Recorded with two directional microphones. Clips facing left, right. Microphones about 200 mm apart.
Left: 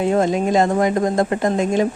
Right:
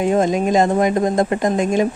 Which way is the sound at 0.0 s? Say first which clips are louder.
Right 1 dB; 15° right (ahead or behind).